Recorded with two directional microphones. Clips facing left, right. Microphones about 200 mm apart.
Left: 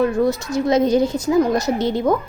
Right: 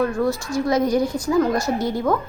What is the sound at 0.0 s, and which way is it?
A woman's voice, 20° left (ahead or behind).